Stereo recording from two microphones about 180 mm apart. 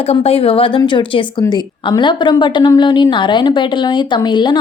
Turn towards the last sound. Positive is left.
turn(degrees=25)  # may be behind; listen again after turning